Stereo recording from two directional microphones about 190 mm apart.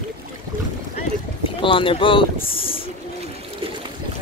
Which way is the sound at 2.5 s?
30° left (ahead or behind).